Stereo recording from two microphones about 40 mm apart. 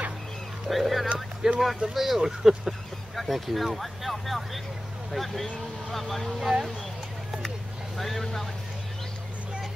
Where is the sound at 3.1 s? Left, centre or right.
Centre.